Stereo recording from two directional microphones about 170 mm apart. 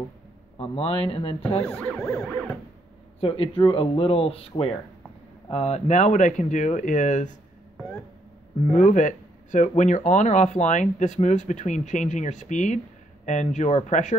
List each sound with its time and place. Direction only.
0.6 s speech: 35° left (ahead or behind)
1.8 s a sound: 5° left (ahead or behind)
3.2 s speech: 35° left (ahead or behind)
8.7 s speech: 50° left (ahead or behind)